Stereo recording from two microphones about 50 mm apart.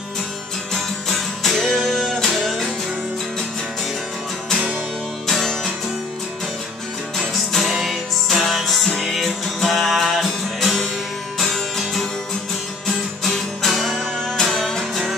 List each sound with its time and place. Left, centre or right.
1.1 s music: centre
5.2 s music: centre
7.2 s music: centre